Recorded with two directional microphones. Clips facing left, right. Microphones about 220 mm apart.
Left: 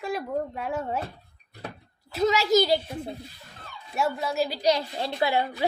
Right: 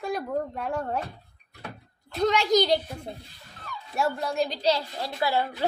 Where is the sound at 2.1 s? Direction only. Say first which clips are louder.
Left 1 dB; 5° left (ahead or behind).